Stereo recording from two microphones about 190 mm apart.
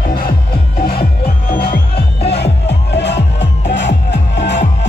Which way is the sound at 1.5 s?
55° left (ahead or behind).